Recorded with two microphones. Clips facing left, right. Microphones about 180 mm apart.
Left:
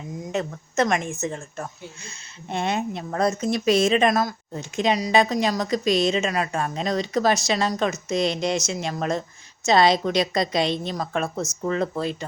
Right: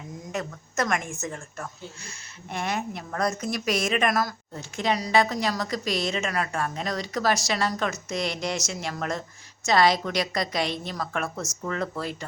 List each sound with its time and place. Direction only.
0.3 s speech: 25° left (ahead or behind)